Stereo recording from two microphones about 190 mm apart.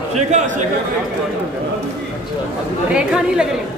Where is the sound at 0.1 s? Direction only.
35° right (ahead or behind).